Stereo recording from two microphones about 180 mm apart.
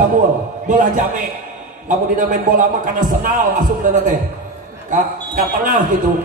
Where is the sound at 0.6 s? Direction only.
45° right (ahead or behind).